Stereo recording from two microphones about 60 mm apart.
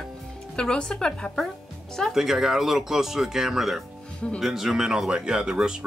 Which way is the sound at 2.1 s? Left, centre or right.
Centre.